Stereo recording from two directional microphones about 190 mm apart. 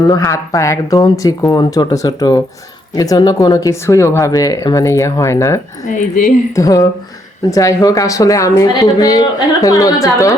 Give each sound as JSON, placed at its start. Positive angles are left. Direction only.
{"t": 0.1, "sound": "speech", "side_deg": 20}
{"t": 5.8, "sound": "speech", "side_deg": 40}
{"t": 6.5, "sound": "speech", "side_deg": 20}